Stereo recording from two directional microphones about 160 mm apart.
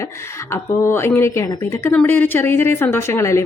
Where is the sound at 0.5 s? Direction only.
15° left (ahead or behind).